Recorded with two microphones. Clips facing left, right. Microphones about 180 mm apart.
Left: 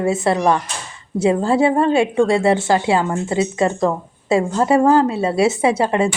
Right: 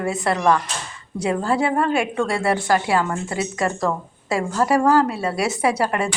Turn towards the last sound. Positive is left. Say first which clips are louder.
# left 4 dB
turn(degrees=25)  # may be behind; listen again after turning